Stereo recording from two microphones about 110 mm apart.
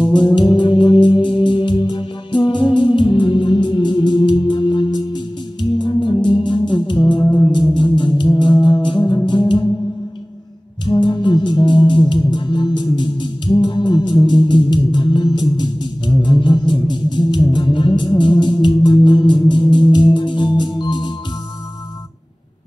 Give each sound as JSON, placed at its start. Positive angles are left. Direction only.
{"t": 0.0, "sound": "music", "side_deg": 45}
{"t": 10.9, "sound": "music", "side_deg": 45}